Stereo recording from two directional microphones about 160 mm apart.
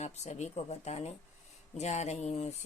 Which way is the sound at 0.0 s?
45° left (ahead or behind).